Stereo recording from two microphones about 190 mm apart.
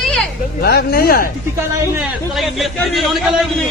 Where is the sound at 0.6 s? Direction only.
55° left (ahead or behind).